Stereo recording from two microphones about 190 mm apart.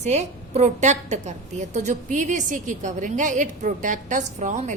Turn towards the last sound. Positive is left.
turn(degrees=-40)  # may be behind; listen again after turning